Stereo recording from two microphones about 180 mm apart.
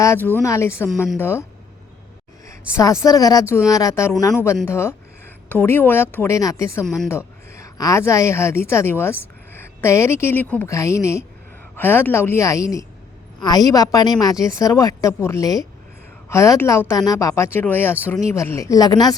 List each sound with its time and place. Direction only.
0.0 s a woman's voice: 15° left (ahead or behind)
2.5 s a woman's voice: 15° left (ahead or behind)
6.8 s speech: centre (ahead or behind)
7.5 s a woman's voice: 15° left (ahead or behind)